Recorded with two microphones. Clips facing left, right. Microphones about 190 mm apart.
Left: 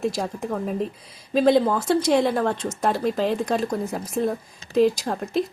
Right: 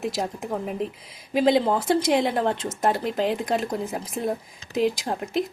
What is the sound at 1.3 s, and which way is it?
A woman's voice, 15° right (ahead or behind).